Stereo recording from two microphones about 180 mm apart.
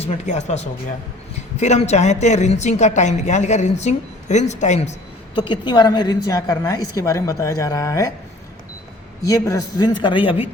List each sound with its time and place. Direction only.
0.0 s a woman's voice: 35° left (ahead or behind)
5.3 s a woman's voice: 25° left (ahead or behind)
9.2 s a woman's voice: 20° left (ahead or behind)